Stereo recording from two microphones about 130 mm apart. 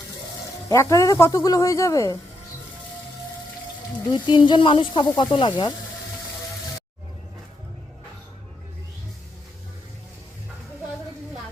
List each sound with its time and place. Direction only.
0.7 s speech: 25° left (ahead or behind)
4.1 s speech: 35° left (ahead or behind)